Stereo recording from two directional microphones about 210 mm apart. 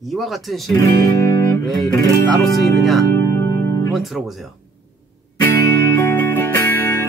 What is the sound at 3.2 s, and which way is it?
Music, 20° left (ahead or behind).